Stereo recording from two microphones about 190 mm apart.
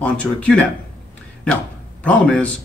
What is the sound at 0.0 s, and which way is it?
Speech, 5° left (ahead or behind).